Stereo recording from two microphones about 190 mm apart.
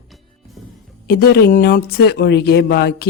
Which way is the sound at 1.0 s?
55° left (ahead or behind).